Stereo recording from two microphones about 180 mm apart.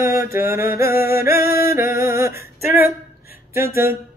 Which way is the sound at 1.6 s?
15° right (ahead or behind).